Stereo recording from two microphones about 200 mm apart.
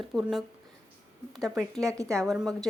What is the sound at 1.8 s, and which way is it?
Speech, 15° right (ahead or behind).